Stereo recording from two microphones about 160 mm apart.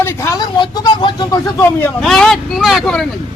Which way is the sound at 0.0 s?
20° left (ahead or behind).